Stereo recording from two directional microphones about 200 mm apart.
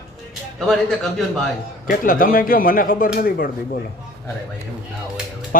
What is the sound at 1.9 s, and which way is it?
Speech, 45° left (ahead or behind).